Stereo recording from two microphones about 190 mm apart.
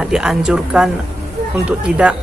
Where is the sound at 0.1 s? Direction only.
5° right (ahead or behind).